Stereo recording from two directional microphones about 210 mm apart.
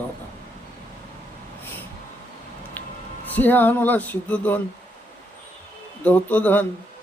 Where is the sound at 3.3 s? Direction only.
10° left (ahead or behind).